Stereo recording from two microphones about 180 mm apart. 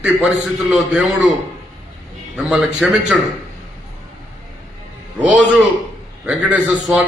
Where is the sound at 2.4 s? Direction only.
5° right (ahead or behind).